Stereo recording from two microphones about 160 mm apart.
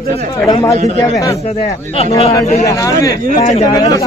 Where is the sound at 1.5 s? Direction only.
40° left (ahead or behind).